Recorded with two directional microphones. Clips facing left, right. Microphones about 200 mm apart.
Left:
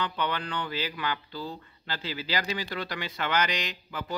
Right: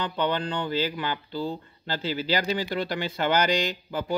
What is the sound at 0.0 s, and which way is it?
Speech, 30° right (ahead or behind).